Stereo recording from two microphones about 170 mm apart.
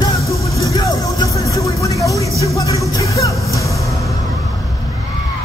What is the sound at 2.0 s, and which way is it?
Vehicle, 20° right (ahead or behind).